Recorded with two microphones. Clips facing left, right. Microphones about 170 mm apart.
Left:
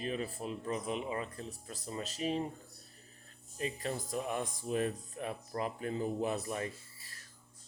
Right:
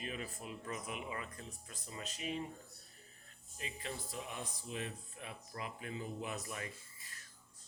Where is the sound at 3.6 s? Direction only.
40° left (ahead or behind).